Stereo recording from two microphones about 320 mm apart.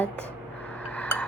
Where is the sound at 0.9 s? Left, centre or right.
Centre.